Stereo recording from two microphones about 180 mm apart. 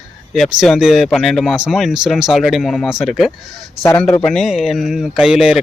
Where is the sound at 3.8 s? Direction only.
15° left (ahead or behind).